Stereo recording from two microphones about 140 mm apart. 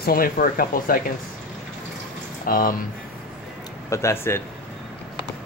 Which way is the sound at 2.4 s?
85° left.